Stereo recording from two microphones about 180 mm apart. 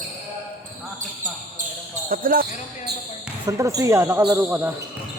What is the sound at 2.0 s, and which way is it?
Speech, 50° right (ahead or behind).